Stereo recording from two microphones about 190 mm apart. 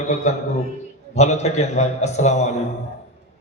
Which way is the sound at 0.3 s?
35° left (ahead or behind).